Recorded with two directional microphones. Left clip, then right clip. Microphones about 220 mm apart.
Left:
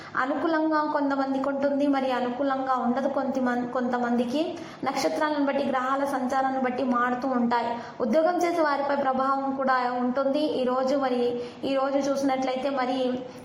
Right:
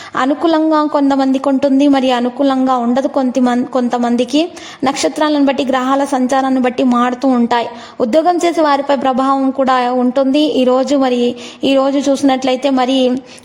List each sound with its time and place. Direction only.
0.2 s a woman's voice: 50° right (ahead or behind)